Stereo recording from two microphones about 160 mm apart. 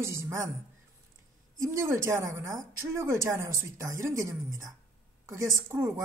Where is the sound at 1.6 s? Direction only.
15° right (ahead or behind).